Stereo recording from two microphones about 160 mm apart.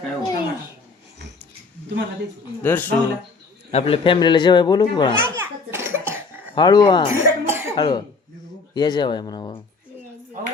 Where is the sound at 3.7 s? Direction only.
40° left (ahead or behind).